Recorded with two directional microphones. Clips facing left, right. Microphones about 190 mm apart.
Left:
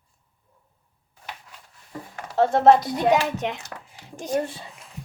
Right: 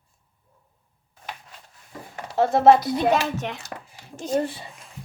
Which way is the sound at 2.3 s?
5° right (ahead or behind).